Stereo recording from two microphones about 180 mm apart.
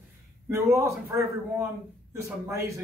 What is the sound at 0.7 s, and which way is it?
A man's voice, 15° right (ahead or behind).